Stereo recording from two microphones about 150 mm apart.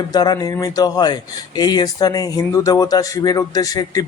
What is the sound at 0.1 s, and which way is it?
Speech, 25° left (ahead or behind).